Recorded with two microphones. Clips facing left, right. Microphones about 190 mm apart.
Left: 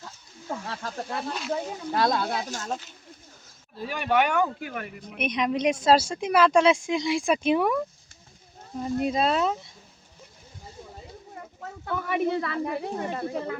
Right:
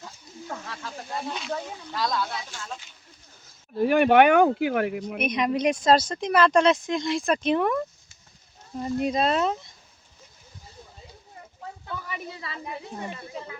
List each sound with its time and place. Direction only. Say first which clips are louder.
0.7 s speech: left 3 dB; 45° left (ahead or behind)
1.3 s speech: left 1 dB; centre (ahead or behind)
1.9 s speech: left 4 dB; 55° left (ahead or behind)
2.3 s speech: left 6 dB; 45° left (ahead or behind)
3.8 s speech: right 8 dB; 60° right (ahead or behind)
5.2 s speech: even; 5° right (ahead or behind)
5.8 s speech: even; 10° left (ahead or behind)
9.0 s speech: right 1 dB; centre (ahead or behind)
11.4 s a sound: left 4 dB; 70° left (ahead or behind)
11.9 s speech: left 12 dB; 60° left (ahead or behind)